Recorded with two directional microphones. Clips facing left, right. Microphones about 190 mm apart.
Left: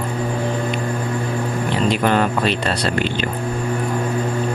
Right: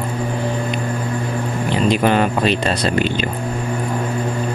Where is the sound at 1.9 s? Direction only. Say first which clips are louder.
Right 2 dB; 15° right (ahead or behind).